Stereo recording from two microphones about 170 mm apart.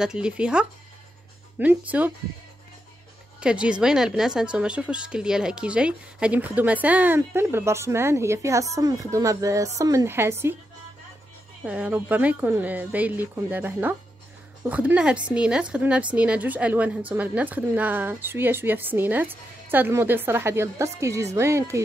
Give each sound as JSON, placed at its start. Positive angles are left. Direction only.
{"t": 0.0, "sound": "speech", "side_deg": -5}
{"t": 1.9, "sound": "speech", "side_deg": -10}
{"t": 3.3, "sound": "speech", "side_deg": -5}
{"t": 11.6, "sound": "speech", "side_deg": -5}